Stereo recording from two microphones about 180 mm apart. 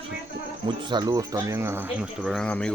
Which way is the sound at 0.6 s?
25° right (ahead or behind).